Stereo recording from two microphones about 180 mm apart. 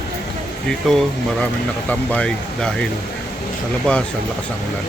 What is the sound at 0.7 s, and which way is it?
Speech, centre (ahead or behind).